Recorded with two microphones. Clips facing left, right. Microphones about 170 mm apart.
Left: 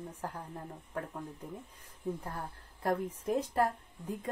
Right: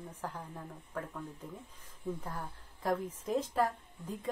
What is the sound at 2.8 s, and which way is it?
Speech, 10° left (ahead or behind).